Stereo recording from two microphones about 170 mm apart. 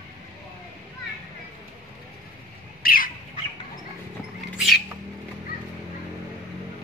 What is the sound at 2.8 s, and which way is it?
Bird, 60° left (ahead or behind).